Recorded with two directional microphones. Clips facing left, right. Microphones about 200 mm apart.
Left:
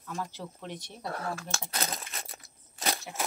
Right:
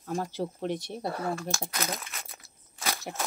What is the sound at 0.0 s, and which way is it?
Speech, 40° right (ahead or behind).